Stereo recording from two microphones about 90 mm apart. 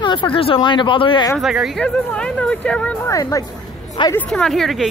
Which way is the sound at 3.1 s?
40° left (ahead or behind).